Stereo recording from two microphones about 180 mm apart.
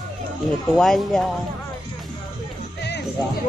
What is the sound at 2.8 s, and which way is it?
Music, 65° left (ahead or behind).